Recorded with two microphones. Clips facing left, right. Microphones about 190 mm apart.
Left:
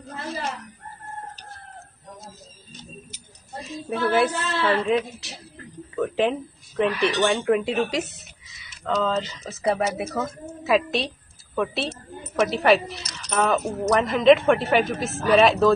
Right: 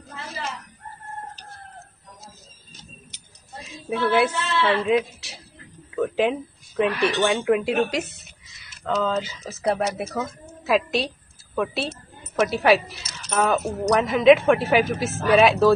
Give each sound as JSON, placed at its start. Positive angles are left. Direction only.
{"t": 3.6, "sound": "speech", "side_deg": 0}
{"t": 4.3, "sound": "a woman's voice", "side_deg": 40}
{"t": 4.6, "sound": "speech", "side_deg": 0}
{"t": 5.9, "sound": "a sound", "side_deg": 0}
{"t": 6.8, "sound": "speech", "side_deg": 0}